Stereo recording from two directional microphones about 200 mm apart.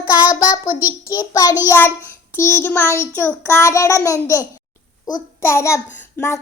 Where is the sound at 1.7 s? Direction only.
10° left (ahead or behind).